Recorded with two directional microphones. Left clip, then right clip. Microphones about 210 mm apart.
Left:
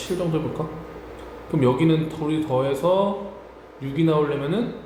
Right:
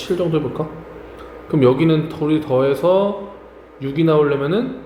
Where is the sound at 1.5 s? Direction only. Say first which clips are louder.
Right 5 dB; 30° right (ahead or behind).